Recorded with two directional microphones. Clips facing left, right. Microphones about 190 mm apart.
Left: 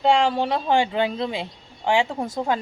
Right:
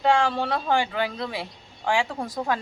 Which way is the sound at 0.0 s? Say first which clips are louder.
Left 3 dB; 20° left (ahead or behind).